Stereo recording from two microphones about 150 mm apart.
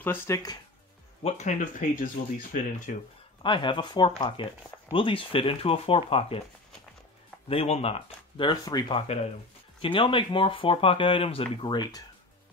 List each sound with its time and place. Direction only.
0.0 s speech: 15° left (ahead or behind)
1.2 s speech: 55° left (ahead or behind)
3.4 s speech: 30° left (ahead or behind)
7.4 s speech: 45° left (ahead or behind)